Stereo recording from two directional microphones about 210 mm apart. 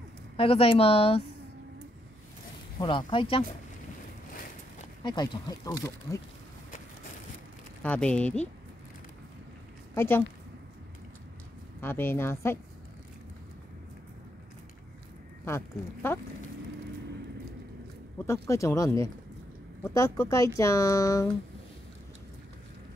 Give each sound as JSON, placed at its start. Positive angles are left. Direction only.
{"t": 0.4, "sound": "a woman's voice", "side_deg": 25}
{"t": 2.8, "sound": "a woman's voice", "side_deg": 20}
{"t": 5.0, "sound": "a woman's voice", "side_deg": 20}
{"t": 7.8, "sound": "speech", "side_deg": 5}
{"t": 9.9, "sound": "speech", "side_deg": 10}
{"t": 11.8, "sound": "speech", "side_deg": 10}
{"t": 15.4, "sound": "speech", "side_deg": 10}
{"t": 18.2, "sound": "speech", "side_deg": 15}